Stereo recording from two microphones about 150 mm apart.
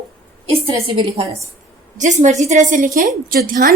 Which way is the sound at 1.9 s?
55° right (ahead or behind).